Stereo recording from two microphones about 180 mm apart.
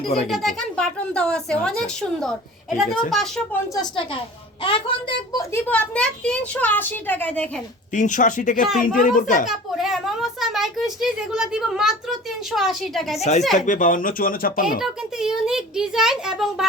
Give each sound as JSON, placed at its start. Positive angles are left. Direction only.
{"t": 0.0, "sound": "speech", "side_deg": 35}
{"t": 0.3, "sound": "speech", "side_deg": 0}
{"t": 3.8, "sound": "a woman's voice", "side_deg": 25}
{"t": 7.9, "sound": "speech", "side_deg": 45}
{"t": 9.5, "sound": "speech", "side_deg": 0}
{"t": 13.1, "sound": "speech", "side_deg": 35}
{"t": 14.8, "sound": "speech", "side_deg": -5}